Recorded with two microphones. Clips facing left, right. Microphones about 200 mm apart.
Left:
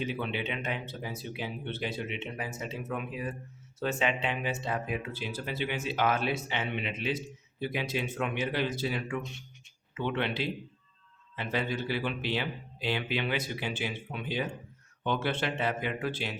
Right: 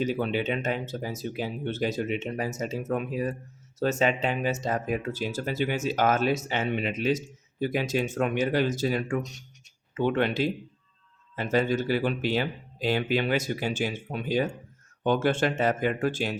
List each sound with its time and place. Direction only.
0.0 s speech: 40° right (ahead or behind)